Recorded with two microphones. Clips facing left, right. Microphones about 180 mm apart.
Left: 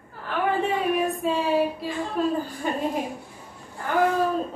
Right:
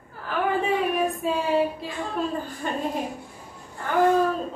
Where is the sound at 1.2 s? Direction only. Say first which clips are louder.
Left 1 dB; centre (ahead or behind).